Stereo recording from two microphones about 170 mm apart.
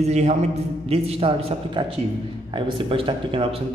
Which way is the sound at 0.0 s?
40° right (ahead or behind).